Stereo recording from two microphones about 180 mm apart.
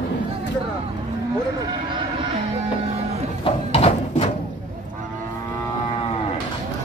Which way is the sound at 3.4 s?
35° left (ahead or behind).